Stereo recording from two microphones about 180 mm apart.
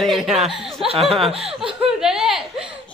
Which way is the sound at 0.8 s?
35° right (ahead or behind).